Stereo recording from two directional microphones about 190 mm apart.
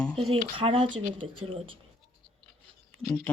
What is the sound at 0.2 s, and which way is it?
Speech, 30° right (ahead or behind).